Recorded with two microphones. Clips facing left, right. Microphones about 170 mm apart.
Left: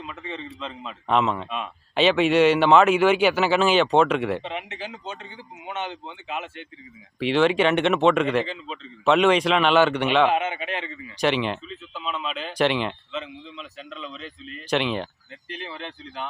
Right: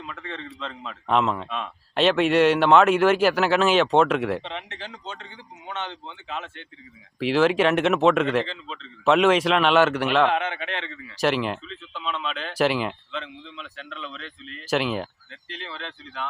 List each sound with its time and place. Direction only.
0.0 s a man's voice: 10° left (ahead or behind)
7.2 s a man's voice: centre (ahead or behind)
8.4 s speech: 10° left (ahead or behind)
9.0 s a man's voice: centre (ahead or behind)
11.2 s a man's voice: centre (ahead or behind)
15.4 s speech: 15° left (ahead or behind)